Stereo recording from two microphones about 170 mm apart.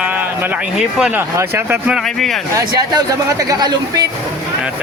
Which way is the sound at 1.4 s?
15° right (ahead or behind).